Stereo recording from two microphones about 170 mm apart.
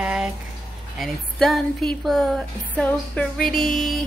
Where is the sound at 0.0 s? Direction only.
5° right (ahead or behind).